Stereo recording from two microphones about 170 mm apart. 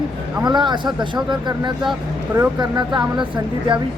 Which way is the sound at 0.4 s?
25° right (ahead or behind).